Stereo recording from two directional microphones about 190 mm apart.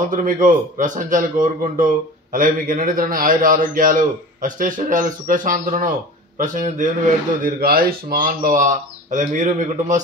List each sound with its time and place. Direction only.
0.0 s a man's voice: 45° right (ahead or behind)